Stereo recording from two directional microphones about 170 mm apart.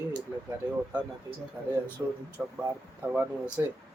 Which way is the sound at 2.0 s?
15° right (ahead or behind).